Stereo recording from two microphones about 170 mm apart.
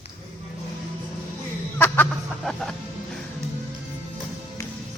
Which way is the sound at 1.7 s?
10° left (ahead or behind).